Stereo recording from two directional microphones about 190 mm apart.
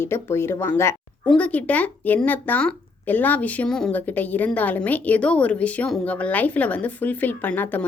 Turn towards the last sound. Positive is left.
turn(degrees=10)  # may be behind; listen again after turning